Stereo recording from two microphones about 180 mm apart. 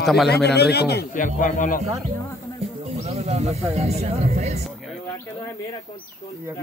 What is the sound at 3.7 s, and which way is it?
Speech, 35° right (ahead or behind).